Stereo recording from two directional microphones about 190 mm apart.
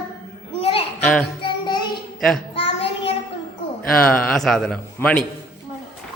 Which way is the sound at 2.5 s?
30° left (ahead or behind).